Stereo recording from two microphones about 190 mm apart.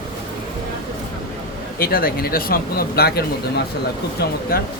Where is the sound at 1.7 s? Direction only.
50° left (ahead or behind).